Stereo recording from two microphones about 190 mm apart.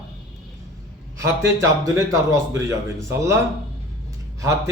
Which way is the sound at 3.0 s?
15° right (ahead or behind).